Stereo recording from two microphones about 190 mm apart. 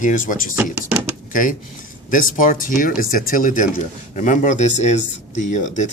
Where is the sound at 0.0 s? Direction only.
45° left (ahead or behind).